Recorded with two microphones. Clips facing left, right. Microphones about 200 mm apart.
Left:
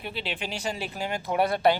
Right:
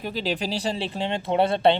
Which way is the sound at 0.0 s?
40° right (ahead or behind).